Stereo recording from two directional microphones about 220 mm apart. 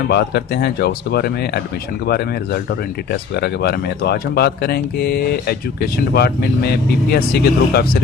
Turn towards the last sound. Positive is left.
turn(degrees=45)  # may be behind; listen again after turning